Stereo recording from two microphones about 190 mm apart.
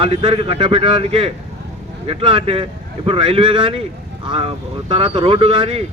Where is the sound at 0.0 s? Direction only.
25° right (ahead or behind).